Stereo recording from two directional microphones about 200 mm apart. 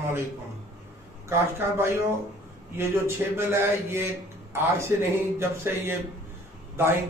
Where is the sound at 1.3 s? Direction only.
10° right (ahead or behind).